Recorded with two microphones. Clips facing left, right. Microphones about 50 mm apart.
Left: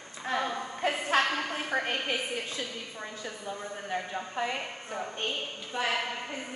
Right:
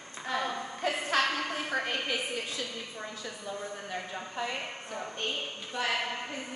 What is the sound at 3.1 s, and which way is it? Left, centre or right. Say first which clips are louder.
A woman's voice: left 1 dB; left.